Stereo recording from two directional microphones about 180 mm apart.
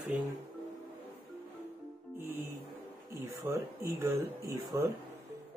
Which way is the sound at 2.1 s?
10° right (ahead or behind).